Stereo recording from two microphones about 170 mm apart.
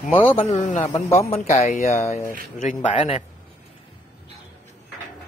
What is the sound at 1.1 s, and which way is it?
Speech, 35° left (ahead or behind).